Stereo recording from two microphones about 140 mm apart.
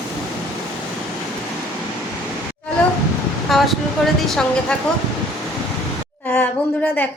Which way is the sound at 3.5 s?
Centre (ahead or behind).